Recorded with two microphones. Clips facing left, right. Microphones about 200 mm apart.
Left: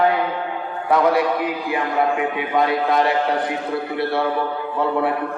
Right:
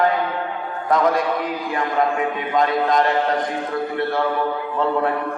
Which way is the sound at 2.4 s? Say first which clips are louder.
Even; 10° left (ahead or behind).